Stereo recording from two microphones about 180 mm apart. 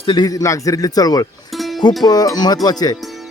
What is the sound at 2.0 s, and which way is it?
Speech, 20° left (ahead or behind).